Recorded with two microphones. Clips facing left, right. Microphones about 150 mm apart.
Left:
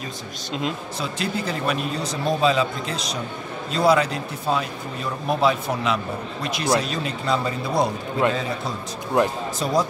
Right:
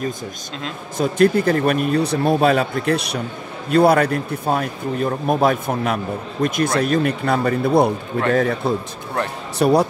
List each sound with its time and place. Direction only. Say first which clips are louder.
0.9 s a man's voice: right 11 dB; 50° right (ahead or behind)